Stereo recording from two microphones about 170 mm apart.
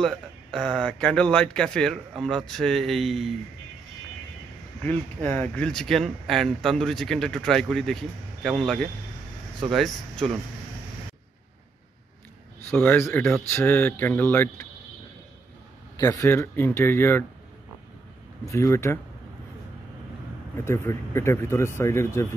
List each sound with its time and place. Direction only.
0.0 s speech: 5° left (ahead or behind)
4.8 s speech: 10° left (ahead or behind)
12.6 s speech: 10° left (ahead or behind)
16.0 s speech: 20° left (ahead or behind)
18.4 s speech: 15° left (ahead or behind)
20.5 s speech: 15° left (ahead or behind)